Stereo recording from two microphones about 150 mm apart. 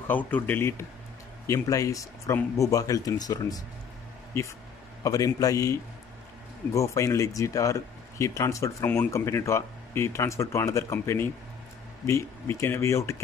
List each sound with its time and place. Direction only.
0.1 s speech: 10° left (ahead or behind)